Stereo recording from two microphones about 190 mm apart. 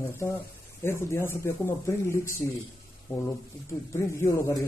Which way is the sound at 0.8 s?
10° left (ahead or behind).